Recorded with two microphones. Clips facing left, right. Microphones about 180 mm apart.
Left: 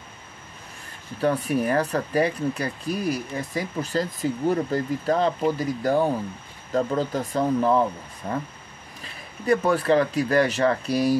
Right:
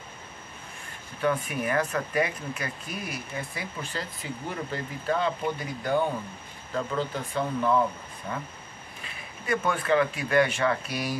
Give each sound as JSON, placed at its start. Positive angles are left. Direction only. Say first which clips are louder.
{"t": 1.2, "sound": "speech", "louder": "left 5 dB", "side_deg": 35}
{"t": 9.5, "sound": "speech", "louder": "left 6 dB", "side_deg": 35}